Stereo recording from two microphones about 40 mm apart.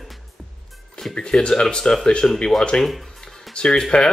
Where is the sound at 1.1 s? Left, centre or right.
Left.